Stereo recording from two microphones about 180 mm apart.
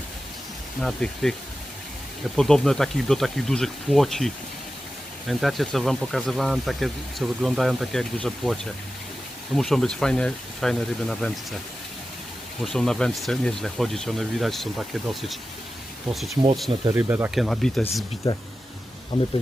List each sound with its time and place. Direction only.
0.8 s speech: centre (ahead or behind)
5.3 s speech: centre (ahead or behind)
9.6 s speech: centre (ahead or behind)
12.6 s speech: centre (ahead or behind)
16.9 s speech: 10° right (ahead or behind)
17.3 s speech: centre (ahead or behind)
18.3 s speech: 30° left (ahead or behind)